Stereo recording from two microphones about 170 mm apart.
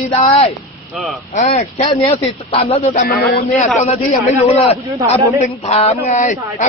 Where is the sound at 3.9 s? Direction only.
40° left (ahead or behind).